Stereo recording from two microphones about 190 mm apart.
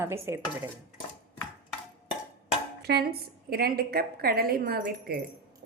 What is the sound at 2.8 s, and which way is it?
A woman's voice, 55° right (ahead or behind).